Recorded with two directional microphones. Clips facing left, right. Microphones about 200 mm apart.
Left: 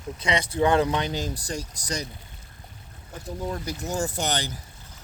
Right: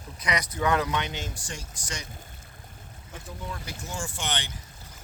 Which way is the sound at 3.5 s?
40° left (ahead or behind).